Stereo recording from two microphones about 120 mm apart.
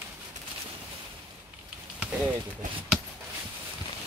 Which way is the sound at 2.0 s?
10° right (ahead or behind).